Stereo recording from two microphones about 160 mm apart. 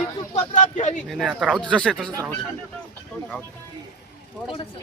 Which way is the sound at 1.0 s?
5° right (ahead or behind).